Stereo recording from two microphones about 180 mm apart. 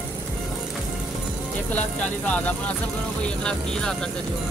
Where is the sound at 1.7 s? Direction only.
10° left (ahead or behind).